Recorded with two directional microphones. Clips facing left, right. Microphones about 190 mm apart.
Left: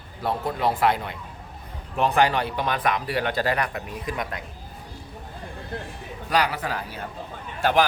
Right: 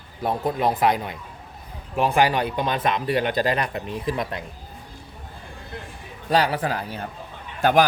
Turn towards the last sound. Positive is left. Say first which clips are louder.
# right 3 dB
turn(degrees=-45)  # may be behind; listen again after turning